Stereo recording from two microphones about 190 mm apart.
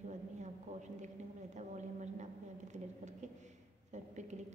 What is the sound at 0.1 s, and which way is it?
A woman's voice, 40° right (ahead or behind).